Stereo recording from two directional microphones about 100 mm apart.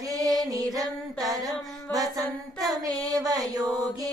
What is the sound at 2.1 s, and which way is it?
Mantra, 40° right (ahead or behind).